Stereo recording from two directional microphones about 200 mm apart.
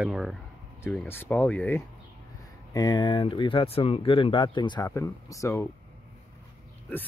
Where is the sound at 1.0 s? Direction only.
10° left (ahead or behind).